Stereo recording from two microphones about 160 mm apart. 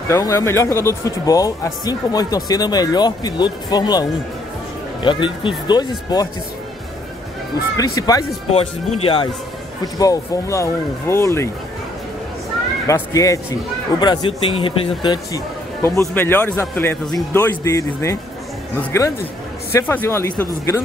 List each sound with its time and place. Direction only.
0.1 s speech: 20° left (ahead or behind)
7.7 s speech: 20° left (ahead or behind)
8.5 s speech: 40° left (ahead or behind)
9.9 s speech: 20° left (ahead or behind)
12.8 s speech: 20° left (ahead or behind)
16.0 s a man's voice: 15° left (ahead or behind)